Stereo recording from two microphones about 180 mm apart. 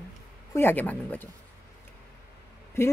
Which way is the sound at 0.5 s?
10° left (ahead or behind).